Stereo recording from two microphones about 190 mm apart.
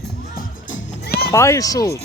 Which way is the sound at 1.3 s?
15° left (ahead or behind).